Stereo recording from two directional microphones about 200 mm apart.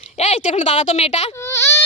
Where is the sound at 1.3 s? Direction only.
15° left (ahead or behind).